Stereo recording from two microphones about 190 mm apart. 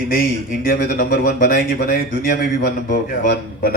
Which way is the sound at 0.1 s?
50° left (ahead or behind).